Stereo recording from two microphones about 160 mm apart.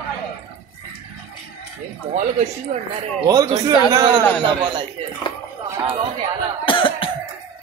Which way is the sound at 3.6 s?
25° right (ahead or behind).